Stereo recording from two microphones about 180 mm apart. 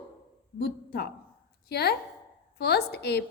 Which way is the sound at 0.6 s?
60° left (ahead or behind).